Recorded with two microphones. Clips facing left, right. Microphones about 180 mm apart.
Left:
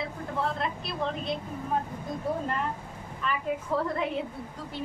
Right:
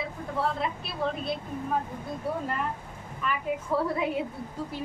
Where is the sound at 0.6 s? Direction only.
5° right (ahead or behind).